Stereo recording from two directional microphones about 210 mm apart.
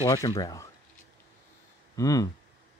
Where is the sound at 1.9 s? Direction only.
15° left (ahead or behind).